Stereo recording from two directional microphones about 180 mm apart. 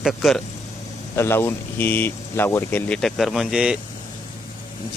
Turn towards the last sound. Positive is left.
turn(degrees=-5)  # may be behind; listen again after turning